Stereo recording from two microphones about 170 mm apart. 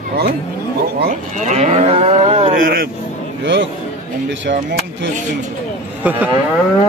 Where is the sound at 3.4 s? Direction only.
90° right.